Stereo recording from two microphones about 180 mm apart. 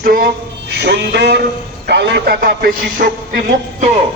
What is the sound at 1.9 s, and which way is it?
A man's voice, 70° right (ahead or behind).